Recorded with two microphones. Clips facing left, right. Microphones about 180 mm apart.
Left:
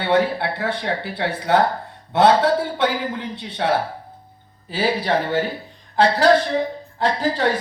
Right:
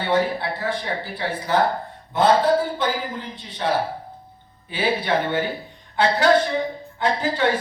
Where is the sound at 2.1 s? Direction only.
75° left (ahead or behind).